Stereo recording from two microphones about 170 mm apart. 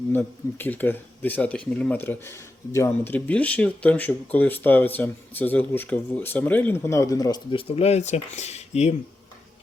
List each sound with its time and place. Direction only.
0.1 s speech: 10° left (ahead or behind)
7.8 s speech: 40° left (ahead or behind)